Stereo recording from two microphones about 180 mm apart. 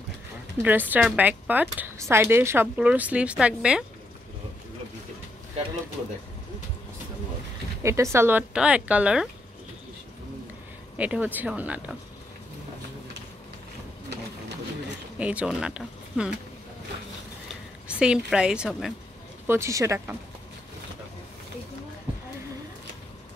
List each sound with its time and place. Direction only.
0.6 s speech: 10° right (ahead or behind)
7.8 s speech: 15° right (ahead or behind)
11.0 s speech: 10° right (ahead or behind)
15.1 s speech: 5° right (ahead or behind)
17.8 s a woman's voice: 5° right (ahead or behind)
19.4 s speech: 15° right (ahead or behind)